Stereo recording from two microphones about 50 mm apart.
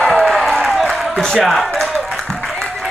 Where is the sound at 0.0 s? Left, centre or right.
Centre.